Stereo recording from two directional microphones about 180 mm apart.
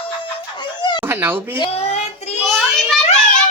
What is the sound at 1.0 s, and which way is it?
Speech, 10° right (ahead or behind).